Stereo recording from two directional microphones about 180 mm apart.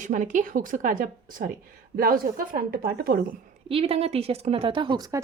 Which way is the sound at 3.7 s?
30° right (ahead or behind).